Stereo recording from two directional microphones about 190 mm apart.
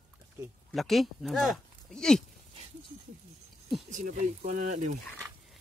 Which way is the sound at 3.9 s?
40° right (ahead or behind).